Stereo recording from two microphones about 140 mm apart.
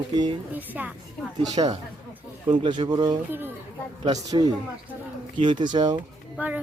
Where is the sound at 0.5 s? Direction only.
10° right (ahead or behind).